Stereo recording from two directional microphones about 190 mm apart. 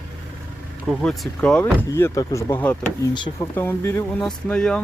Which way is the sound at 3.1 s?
25° left (ahead or behind).